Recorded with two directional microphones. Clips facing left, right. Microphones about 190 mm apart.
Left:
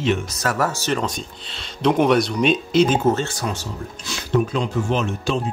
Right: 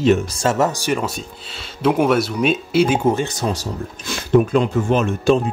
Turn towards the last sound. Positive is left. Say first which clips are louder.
# right 6 dB
turn(degrees=-50)  # may be behind; listen again after turning